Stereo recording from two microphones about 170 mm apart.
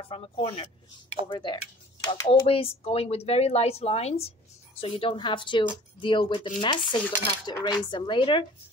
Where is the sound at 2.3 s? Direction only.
35° left (ahead or behind).